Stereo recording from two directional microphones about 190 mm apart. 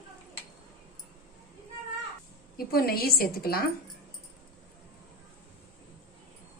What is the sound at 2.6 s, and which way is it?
A woman's voice, 50° left (ahead or behind).